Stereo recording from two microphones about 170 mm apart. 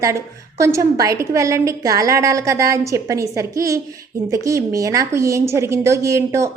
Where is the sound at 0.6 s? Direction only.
20° right (ahead or behind).